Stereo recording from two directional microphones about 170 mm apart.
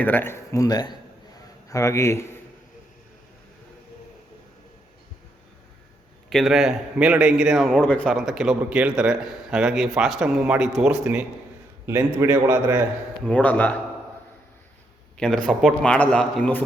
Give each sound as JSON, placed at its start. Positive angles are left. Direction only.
{"t": 0.0, "sound": "speech", "side_deg": 10}
{"t": 6.3, "sound": "a man's voice", "side_deg": 0}
{"t": 13.2, "sound": "speech", "side_deg": 10}
{"t": 15.4, "sound": "a man's voice", "side_deg": 5}